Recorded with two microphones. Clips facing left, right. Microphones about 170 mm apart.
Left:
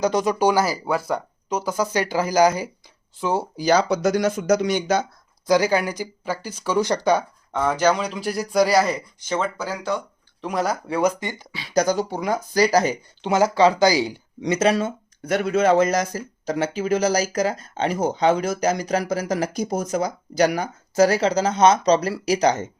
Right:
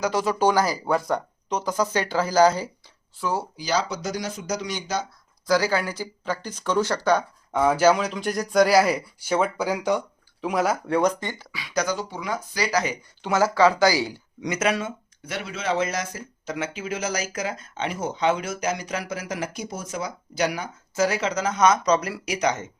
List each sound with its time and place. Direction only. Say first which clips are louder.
0.0 s speech: left 2 dB; 20° left (ahead or behind)
3.2 s speech: left 4 dB; 25° left (ahead or behind)
3.6 s speech: left 11 dB; 55° left (ahead or behind)
5.5 s speech: left 3 dB; 20° left (ahead or behind)
7.5 s speech: right 1 dB; 10° right (ahead or behind)
10.4 s speech: right 1 dB; 5° right (ahead or behind); by 11.4 s 10° left (ahead or behind)
11.5 s speech: left 6 dB; 30° left (ahead or behind)
13.2 s speech: left 2 dB; 20° left (ahead or behind)
14.4 s speech: left 5 dB; 30° left (ahead or behind)